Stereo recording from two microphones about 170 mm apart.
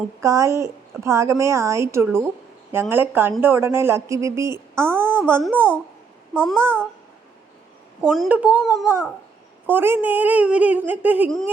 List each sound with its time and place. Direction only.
0.2 s a woman's voice: 20° right (ahead or behind)
6.3 s a child's voice: 5° left (ahead or behind)
6.6 s a woman's voice: 15° right (ahead or behind)
8.3 s a woman's voice: 10° right (ahead or behind)
8.7 s babbling: 20° left (ahead or behind)
9.6 s a woman's voice: 10° right (ahead or behind)